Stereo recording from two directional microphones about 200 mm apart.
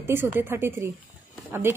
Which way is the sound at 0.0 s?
10° right (ahead or behind).